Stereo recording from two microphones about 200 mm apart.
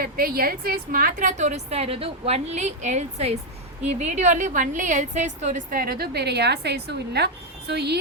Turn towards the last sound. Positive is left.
turn(degrees=-55)  # may be behind; listen again after turning